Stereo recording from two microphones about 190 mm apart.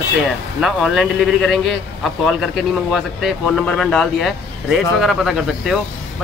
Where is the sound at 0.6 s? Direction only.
Centre (ahead or behind).